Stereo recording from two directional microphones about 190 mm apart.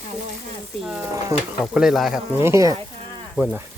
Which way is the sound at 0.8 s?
5° right (ahead or behind).